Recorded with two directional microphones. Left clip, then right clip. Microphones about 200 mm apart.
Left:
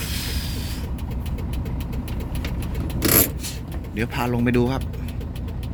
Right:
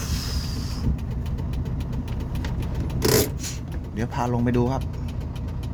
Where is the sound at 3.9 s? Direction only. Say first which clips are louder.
Left 2 dB; 15° right (ahead or behind).